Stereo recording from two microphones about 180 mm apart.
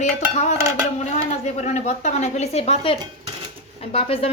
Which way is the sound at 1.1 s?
40° left (ahead or behind).